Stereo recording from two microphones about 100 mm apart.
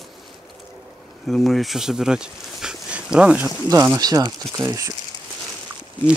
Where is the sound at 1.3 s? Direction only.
Centre (ahead or behind).